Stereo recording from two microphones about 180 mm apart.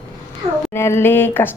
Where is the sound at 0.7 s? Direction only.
15° left (ahead or behind).